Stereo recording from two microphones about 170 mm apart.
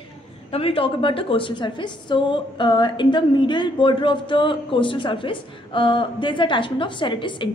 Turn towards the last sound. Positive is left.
turn(degrees=30)  # may be behind; listen again after turning